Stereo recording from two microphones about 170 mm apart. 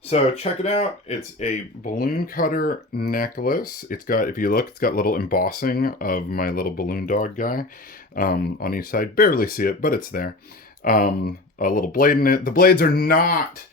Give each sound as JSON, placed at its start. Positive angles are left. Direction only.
{"t": 0.1, "sound": "speech", "side_deg": 40}